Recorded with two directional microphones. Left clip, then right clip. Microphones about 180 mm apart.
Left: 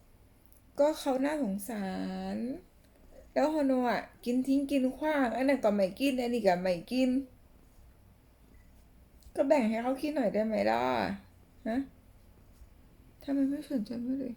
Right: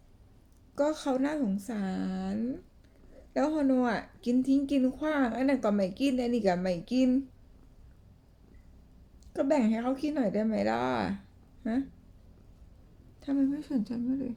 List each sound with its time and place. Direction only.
0.8 s a woman's voice: 15° right (ahead or behind)
9.3 s a woman's voice: 15° right (ahead or behind)
13.1 s a woman's voice: 15° right (ahead or behind)